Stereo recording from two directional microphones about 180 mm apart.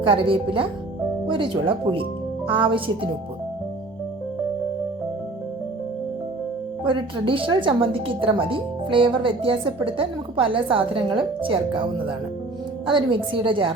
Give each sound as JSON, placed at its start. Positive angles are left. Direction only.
{"t": 0.0, "sound": "speech", "side_deg": -30}
{"t": 6.8, "sound": "speech", "side_deg": -30}